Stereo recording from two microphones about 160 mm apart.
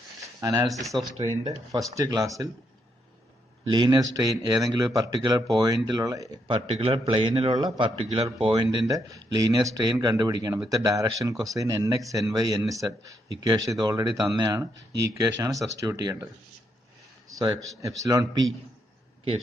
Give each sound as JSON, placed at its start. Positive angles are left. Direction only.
{"t": 0.2, "sound": "a sound", "side_deg": -20}
{"t": 0.8, "sound": "speech", "side_deg": 0}
{"t": 1.7, "sound": "speech", "side_deg": -20}
{"t": 3.7, "sound": "speech", "side_deg": -25}
{"t": 6.4, "sound": "a man's voice", "side_deg": -30}
{"t": 8.6, "sound": "speech", "side_deg": -20}
{"t": 17.4, "sound": "speech", "side_deg": -25}